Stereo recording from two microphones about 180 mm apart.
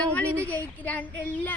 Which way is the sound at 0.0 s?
10° left (ahead or behind).